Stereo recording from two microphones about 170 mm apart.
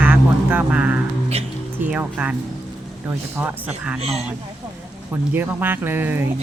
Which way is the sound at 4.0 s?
40° right (ahead or behind).